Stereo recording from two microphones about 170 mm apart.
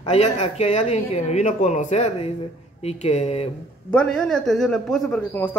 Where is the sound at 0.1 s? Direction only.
40° left (ahead or behind).